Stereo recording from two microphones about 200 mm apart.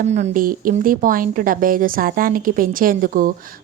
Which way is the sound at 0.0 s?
35° right (ahead or behind).